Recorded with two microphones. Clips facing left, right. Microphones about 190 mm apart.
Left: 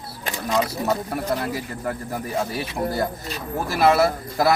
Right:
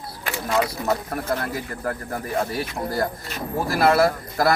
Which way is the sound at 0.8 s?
25° left (ahead or behind).